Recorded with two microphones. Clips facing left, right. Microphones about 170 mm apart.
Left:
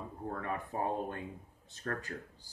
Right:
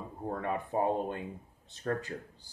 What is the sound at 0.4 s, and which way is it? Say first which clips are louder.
Speech: right 6 dB; 20° right (ahead or behind).